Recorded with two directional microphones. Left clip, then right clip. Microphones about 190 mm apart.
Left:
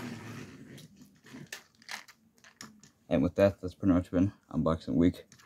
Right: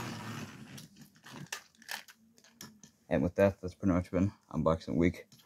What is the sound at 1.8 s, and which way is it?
Mechanisms, 5° left (ahead or behind).